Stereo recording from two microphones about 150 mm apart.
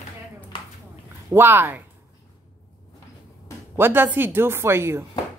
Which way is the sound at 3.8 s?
15° right (ahead or behind).